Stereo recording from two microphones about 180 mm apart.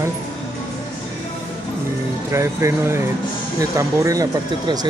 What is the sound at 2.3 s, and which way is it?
Speech, 15° right (ahead or behind).